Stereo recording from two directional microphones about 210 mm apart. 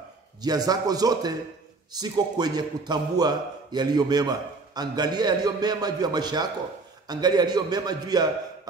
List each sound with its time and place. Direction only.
0.4 s a man's voice: 20° right (ahead or behind)